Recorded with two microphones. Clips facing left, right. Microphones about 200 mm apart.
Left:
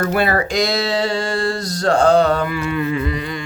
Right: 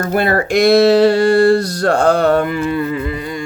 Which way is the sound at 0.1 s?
55° right (ahead or behind).